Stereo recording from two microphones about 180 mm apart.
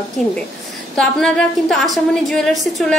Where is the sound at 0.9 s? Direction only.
5° left (ahead or behind).